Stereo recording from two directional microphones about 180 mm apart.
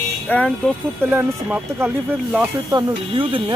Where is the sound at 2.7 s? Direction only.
25° right (ahead or behind).